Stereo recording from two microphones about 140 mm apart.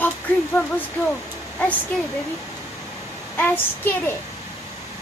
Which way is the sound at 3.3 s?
15° left (ahead or behind).